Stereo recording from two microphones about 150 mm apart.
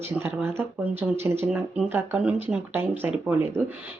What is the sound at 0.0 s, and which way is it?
Speech, 15° right (ahead or behind).